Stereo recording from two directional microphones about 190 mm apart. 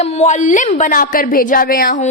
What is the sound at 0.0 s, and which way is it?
A woman's voice, 35° left (ahead or behind).